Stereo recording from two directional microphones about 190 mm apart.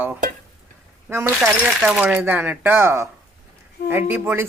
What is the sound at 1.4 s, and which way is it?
Speech, 5° right (ahead or behind).